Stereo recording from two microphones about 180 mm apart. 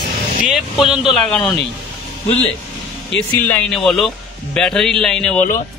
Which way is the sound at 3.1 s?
10° left (ahead or behind).